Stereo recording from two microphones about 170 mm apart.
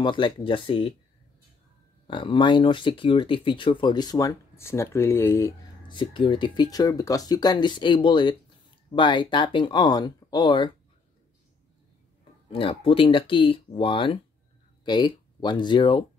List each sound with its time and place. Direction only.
0.0 s speech: 30° left (ahead or behind)
2.0 s speech: 30° left (ahead or behind)
5.9 s speech: 30° left (ahead or behind)
12.5 s speech: 30° left (ahead or behind)